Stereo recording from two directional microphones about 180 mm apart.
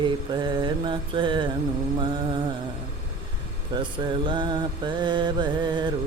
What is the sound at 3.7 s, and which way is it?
Mantra, 25° right (ahead or behind).